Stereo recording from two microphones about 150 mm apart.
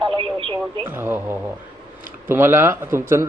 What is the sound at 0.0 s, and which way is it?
Radio, 35° right (ahead or behind).